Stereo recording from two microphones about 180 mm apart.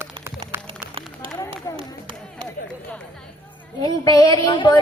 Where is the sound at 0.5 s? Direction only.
15° right (ahead or behind).